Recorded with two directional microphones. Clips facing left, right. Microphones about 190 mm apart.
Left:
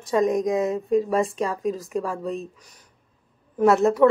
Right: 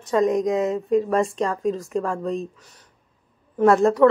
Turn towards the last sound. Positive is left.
turn(degrees=5)  # may be behind; listen again after turning